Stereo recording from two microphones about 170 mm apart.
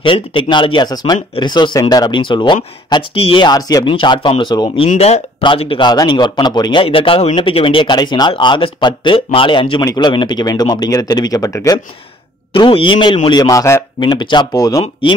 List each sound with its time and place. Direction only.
0.0 s speech: 30° left (ahead or behind)
12.5 s speech: 30° left (ahead or behind)